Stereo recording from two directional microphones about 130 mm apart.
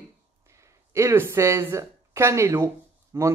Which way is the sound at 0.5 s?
20° right (ahead or behind).